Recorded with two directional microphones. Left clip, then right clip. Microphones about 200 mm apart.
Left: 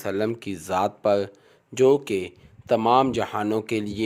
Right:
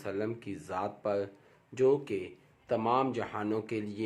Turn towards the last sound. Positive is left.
turn(degrees=45)  # may be behind; listen again after turning